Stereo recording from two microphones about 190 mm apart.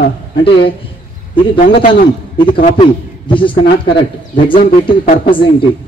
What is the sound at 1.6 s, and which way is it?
Speech, 45° left (ahead or behind).